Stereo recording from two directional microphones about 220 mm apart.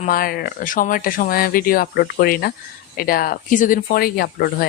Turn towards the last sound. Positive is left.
turn(degrees=45)  # may be behind; listen again after turning